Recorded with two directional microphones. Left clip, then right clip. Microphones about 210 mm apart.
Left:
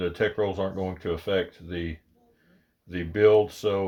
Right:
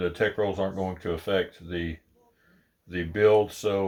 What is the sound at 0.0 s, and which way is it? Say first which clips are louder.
Speech: even; 25° left (ahead or behind).